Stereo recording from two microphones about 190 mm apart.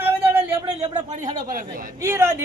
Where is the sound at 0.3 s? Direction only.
15° right (ahead or behind).